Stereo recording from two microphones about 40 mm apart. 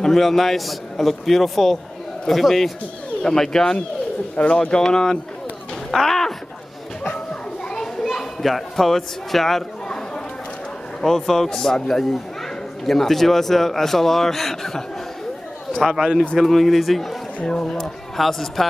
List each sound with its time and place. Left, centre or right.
0.0 s a man's voice: centre
3.3 s speech: centre
4.4 s speech: left
5.9 s a sound: centre
7.7 s children playing: centre
11.0 s a man's voice: centre
17.5 s speech: centre
18.1 s a man's voice: centre